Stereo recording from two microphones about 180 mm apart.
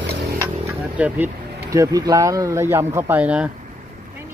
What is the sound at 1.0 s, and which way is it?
Speech, 10° right (ahead or behind).